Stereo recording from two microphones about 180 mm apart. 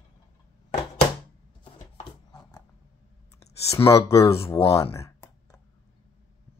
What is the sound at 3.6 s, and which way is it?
Speech, 15° left (ahead or behind).